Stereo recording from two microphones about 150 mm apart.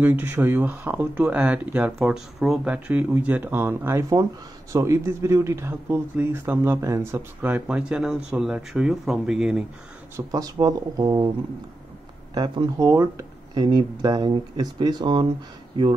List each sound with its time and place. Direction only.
0.0 s speech: 10° right (ahead or behind)
10.1 s speech: 25° right (ahead or behind)
12.4 s speech: 25° right (ahead or behind)